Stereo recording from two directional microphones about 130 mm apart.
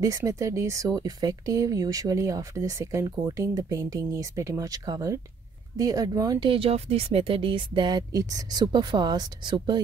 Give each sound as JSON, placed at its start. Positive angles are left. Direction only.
{"t": 0.0, "sound": "speech", "side_deg": -25}
{"t": 6.5, "sound": "speech", "side_deg": -50}
{"t": 8.1, "sound": "speech", "side_deg": -25}